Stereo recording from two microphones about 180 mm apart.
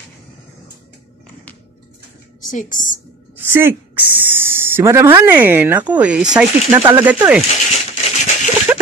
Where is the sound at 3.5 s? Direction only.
15° right (ahead or behind).